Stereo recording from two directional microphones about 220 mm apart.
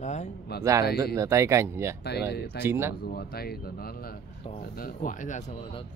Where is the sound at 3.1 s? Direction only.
45° left (ahead or behind).